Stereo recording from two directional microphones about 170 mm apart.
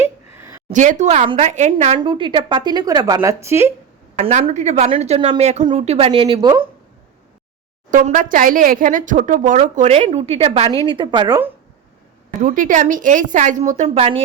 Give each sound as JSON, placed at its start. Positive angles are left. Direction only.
{"t": 0.0, "sound": "a sound", "side_deg": -15}
{"t": 0.7, "sound": "speech", "side_deg": -45}
{"t": 2.0, "sound": "speech", "side_deg": -30}
{"t": 4.2, "sound": "speech", "side_deg": -45}
{"t": 7.9, "sound": "speech", "side_deg": -50}
{"t": 12.4, "sound": "speech", "side_deg": -50}